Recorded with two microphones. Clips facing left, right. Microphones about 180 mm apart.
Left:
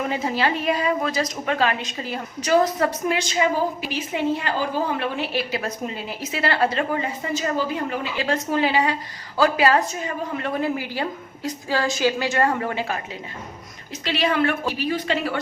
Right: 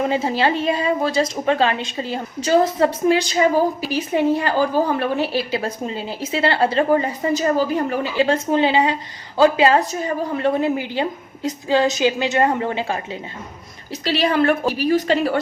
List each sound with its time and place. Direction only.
0.1 s a woman's voice: 30° right (ahead or behind)
14.0 s a woman's voice: 35° right (ahead or behind)